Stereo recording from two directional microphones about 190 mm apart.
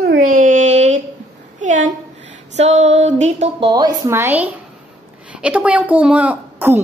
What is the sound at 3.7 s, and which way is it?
A woman's voice, 15° right (ahead or behind).